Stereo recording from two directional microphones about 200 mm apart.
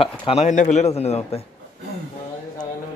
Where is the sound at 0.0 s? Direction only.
30° left (ahead or behind).